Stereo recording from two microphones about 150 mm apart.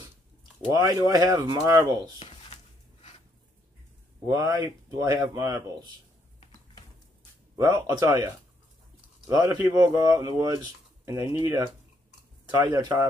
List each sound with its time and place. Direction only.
0.7 s speech: 20° right (ahead or behind)
2.1 s a sound: 40° left (ahead or behind)
4.3 s speech: 25° right (ahead or behind)
7.5 s speech: 25° right (ahead or behind)
9.3 s speech: 25° right (ahead or behind)
12.4 s speech: 25° right (ahead or behind)